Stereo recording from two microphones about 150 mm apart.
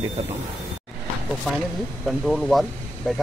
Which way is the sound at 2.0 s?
Centre (ahead or behind).